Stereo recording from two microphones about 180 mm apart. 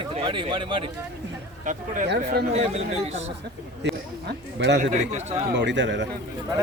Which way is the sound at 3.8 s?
75° right (ahead or behind).